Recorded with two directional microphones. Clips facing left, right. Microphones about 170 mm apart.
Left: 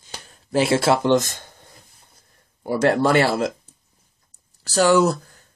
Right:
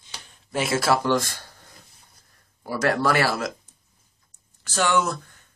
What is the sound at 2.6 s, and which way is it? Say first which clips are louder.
Speech: left 5 dB; 25° left (ahead or behind).